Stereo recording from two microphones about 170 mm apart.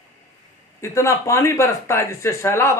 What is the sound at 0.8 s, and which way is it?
A man's voice, 15° left (ahead or behind).